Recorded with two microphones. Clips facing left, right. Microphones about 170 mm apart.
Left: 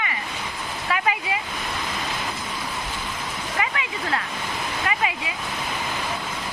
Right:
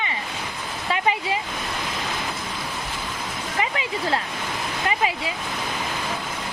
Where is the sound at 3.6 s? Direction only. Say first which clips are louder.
Right 3 dB; 30° right (ahead or behind).